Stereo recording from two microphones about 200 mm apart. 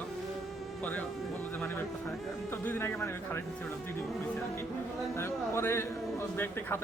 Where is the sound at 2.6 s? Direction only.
10° left (ahead or behind).